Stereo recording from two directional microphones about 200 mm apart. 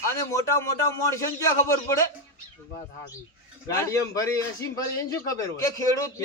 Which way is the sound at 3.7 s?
15° left (ahead or behind).